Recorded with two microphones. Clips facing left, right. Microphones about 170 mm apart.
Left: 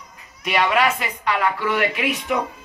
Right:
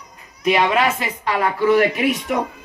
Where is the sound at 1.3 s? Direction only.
30° right (ahead or behind); by 2.4 s 45° right (ahead or behind).